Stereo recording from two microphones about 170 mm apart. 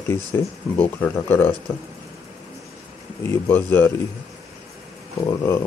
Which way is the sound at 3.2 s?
15° left (ahead or behind).